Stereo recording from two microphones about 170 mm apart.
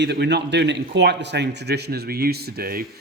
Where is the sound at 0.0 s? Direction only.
85° right; by 2.8 s 65° right (ahead or behind).